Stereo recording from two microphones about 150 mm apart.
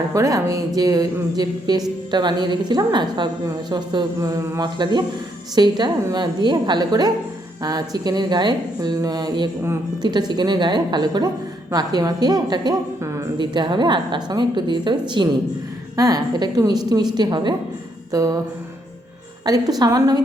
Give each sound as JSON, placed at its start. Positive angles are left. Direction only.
{"t": 0.1, "sound": "speech", "side_deg": -20}
{"t": 19.5, "sound": "speech", "side_deg": -25}